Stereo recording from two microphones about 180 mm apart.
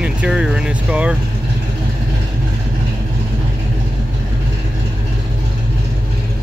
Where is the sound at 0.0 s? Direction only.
5° right (ahead or behind).